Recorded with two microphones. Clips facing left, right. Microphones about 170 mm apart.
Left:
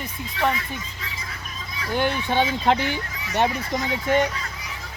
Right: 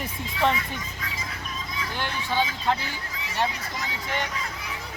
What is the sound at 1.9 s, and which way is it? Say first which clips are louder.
Speech: left 8 dB; 55° left (ahead or behind).